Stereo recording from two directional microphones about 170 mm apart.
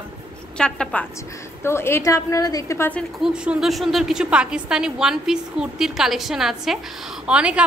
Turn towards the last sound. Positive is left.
turn(degrees=-5)  # may be behind; listen again after turning